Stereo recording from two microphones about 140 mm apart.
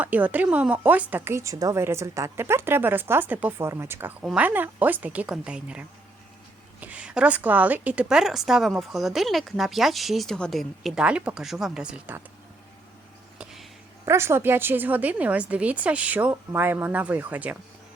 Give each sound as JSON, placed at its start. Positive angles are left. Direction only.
{"t": 0.0, "sound": "speech", "side_deg": -10}
{"t": 13.4, "sound": "a sound", "side_deg": 0}
{"t": 14.0, "sound": "speech", "side_deg": -20}